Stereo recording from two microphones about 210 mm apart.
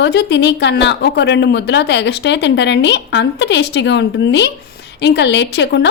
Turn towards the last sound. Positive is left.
turn(degrees=55)  # may be behind; listen again after turning